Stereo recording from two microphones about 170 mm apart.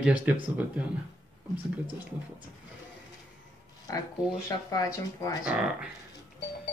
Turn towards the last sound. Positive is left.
turn(degrees=-5)  # may be behind; listen again after turning